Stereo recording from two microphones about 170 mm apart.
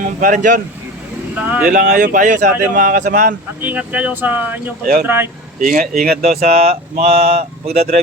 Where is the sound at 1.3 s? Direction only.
10° right (ahead or behind).